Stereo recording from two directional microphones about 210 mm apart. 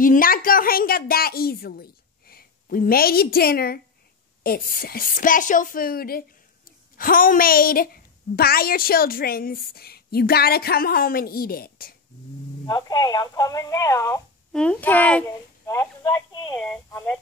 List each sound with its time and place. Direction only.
0.0 s a woman's voice: 40° left (ahead or behind)
12.6 s speech: 20° left (ahead or behind)